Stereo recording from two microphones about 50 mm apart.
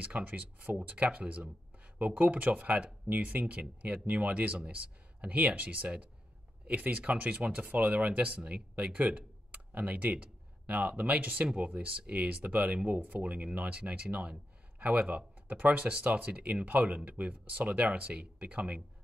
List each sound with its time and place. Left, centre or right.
0.0 s a man's voice: right